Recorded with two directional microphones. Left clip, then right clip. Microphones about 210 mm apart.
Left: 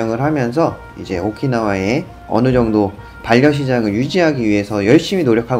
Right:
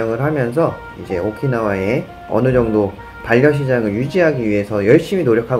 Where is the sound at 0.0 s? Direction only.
20° left (ahead or behind).